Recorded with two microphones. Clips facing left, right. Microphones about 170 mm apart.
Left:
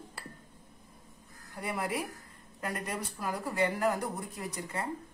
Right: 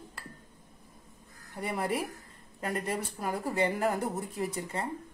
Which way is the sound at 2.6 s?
30° right (ahead or behind).